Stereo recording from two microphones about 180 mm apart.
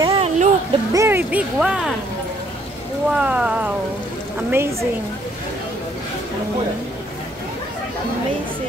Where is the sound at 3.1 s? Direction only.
5° right (ahead or behind).